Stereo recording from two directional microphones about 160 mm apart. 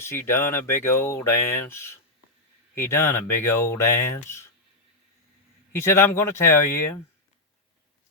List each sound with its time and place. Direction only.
0.0 s speech: 15° left (ahead or behind)
5.7 s speech: 15° left (ahead or behind)